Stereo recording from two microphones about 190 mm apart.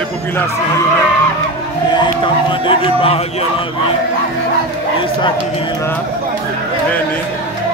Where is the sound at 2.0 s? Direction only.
25° left (ahead or behind).